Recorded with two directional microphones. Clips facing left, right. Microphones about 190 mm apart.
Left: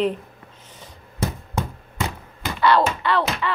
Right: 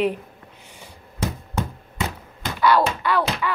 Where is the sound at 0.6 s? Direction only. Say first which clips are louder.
Left 1 dB; 10° right (ahead or behind).